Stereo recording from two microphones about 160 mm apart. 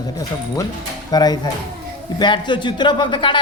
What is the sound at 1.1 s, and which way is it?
Speech, 25° left (ahead or behind).